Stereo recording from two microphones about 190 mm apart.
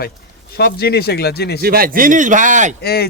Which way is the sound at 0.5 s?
55° left (ahead or behind).